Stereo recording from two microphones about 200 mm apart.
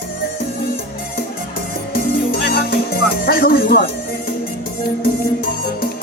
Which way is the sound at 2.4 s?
50° left (ahead or behind).